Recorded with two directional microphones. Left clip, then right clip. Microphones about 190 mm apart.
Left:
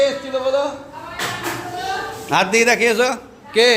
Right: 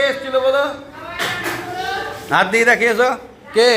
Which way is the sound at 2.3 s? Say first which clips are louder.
Right 2 dB; 20° left (ahead or behind).